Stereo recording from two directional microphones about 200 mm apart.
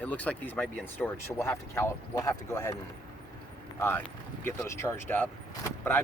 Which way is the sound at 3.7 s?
10° left (ahead or behind).